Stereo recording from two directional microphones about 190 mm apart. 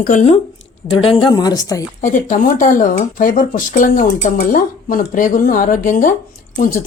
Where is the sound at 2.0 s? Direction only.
45° left (ahead or behind).